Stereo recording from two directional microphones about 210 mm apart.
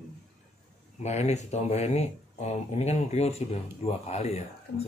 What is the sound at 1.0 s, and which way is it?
Speech, 30° left (ahead or behind).